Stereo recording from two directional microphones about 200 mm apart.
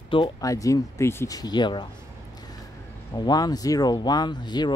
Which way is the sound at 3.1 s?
20° left (ahead or behind).